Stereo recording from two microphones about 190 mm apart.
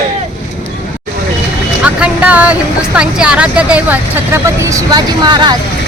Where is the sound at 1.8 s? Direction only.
5° right (ahead or behind).